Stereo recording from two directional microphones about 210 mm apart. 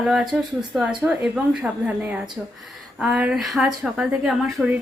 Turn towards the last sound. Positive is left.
turn(degrees=-5)  # may be behind; listen again after turning